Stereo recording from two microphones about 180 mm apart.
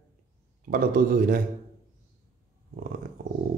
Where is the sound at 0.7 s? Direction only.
50° right (ahead or behind).